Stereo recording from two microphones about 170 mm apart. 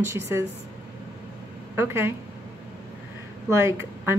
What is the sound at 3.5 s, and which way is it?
Speech, 15° right (ahead or behind).